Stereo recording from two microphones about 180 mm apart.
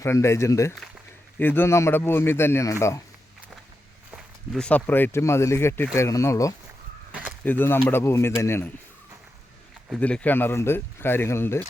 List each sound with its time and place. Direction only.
0.0 s speech: 15° left (ahead or behind)
4.1 s speech: 5° left (ahead or behind)
7.1 s a sound: 10° right (ahead or behind)
7.4 s speech: 10° left (ahead or behind)
9.9 s speech: 5° left (ahead or behind)